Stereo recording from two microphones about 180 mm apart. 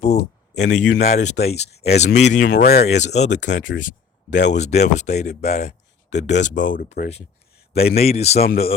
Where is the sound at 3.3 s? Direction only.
80° left.